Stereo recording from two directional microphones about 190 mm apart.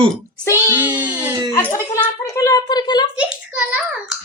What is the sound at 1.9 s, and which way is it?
Speech, 15° left (ahead or behind).